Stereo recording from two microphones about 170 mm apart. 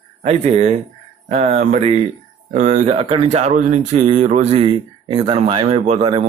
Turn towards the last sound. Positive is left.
turn(degrees=-35)  # may be behind; listen again after turning